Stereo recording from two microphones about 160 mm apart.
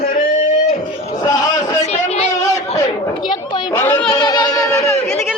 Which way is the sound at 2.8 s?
30° left (ahead or behind).